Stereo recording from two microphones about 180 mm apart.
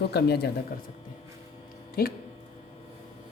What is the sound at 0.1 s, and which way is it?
Speech, 65° left (ahead or behind).